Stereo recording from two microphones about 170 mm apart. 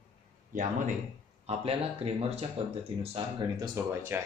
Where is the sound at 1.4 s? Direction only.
35° right (ahead or behind).